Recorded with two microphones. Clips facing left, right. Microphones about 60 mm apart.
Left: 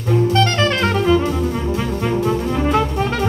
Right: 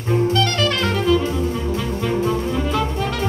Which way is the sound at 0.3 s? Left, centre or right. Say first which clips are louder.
Left 3 dB; left.